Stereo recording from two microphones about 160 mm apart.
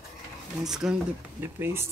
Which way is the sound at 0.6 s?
5° right (ahead or behind).